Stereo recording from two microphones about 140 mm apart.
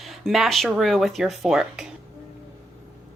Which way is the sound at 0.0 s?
Centre (ahead or behind).